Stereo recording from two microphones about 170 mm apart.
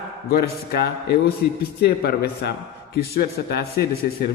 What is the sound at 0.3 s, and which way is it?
A man's voice, 65° left (ahead or behind).